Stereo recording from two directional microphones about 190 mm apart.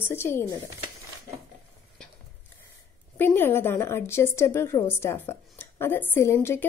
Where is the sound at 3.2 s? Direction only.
10° left (ahead or behind).